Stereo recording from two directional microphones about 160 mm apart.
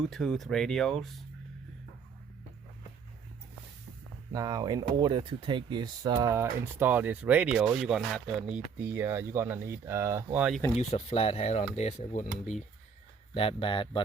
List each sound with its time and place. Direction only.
0.0 s speech: 5° left (ahead or behind)
4.3 s speech: 25° right (ahead or behind)
10.8 s speech: 40° left (ahead or behind)
13.3 s speech: 35° left (ahead or behind)